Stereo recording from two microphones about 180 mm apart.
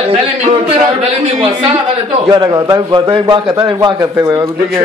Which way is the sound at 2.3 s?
20° right (ahead or behind).